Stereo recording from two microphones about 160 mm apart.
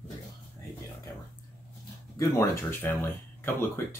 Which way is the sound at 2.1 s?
15° left (ahead or behind).